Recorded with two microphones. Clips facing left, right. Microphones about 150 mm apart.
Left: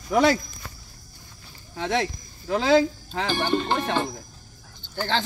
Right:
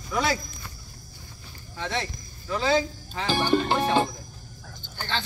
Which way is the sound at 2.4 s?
75° left (ahead or behind).